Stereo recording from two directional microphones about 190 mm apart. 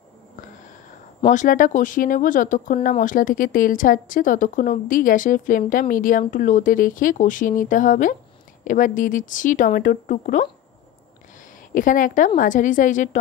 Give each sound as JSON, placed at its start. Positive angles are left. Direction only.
{"t": 1.2, "sound": "speech", "side_deg": 40}
{"t": 11.7, "sound": "speech", "side_deg": 45}